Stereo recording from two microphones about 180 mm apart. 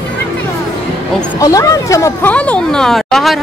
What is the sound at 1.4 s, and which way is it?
Speech, 20° left (ahead or behind).